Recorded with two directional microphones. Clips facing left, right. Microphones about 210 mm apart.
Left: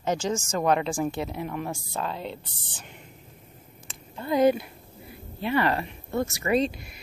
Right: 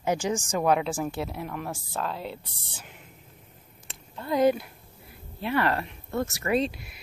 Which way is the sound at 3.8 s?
Centre (ahead or behind).